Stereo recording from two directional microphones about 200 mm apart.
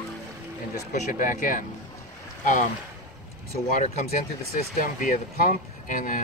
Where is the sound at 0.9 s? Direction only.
40° left (ahead or behind).